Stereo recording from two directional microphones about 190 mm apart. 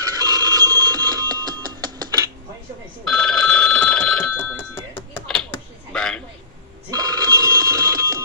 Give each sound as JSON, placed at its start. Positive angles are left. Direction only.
{"t": 0.0, "sound": "telephone bell ringing", "side_deg": -20}
{"t": 3.1, "sound": "telephone bell ringing", "side_deg": 5}
{"t": 4.9, "sound": "a sound", "side_deg": 10}
{"t": 6.9, "sound": "telephone bell ringing", "side_deg": -20}